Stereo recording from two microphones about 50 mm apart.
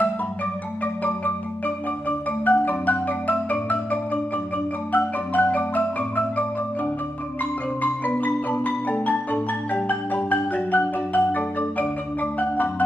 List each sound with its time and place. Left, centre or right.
2.0 s marimba: left
7.8 s marimba: left